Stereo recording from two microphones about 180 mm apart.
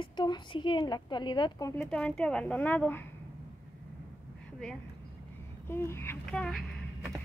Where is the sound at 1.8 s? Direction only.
5° left (ahead or behind).